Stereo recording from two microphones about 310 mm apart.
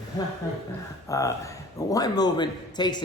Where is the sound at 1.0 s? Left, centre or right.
Centre.